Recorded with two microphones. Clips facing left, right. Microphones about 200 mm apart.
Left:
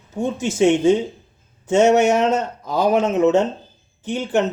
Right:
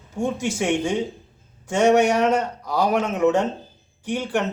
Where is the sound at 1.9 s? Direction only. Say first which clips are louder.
Left 2 dB; 25° left (ahead or behind).